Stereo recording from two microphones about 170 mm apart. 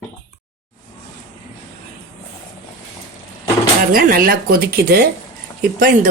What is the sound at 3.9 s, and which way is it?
Speech, 60° right (ahead or behind).